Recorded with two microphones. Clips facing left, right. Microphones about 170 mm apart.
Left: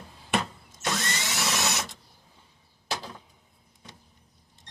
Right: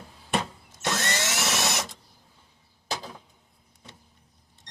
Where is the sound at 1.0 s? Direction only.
85° right.